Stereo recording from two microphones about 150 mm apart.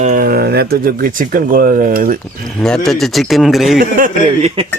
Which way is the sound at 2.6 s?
5° left (ahead or behind).